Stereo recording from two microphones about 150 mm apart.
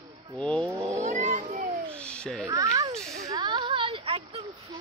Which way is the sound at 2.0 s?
5° left (ahead or behind).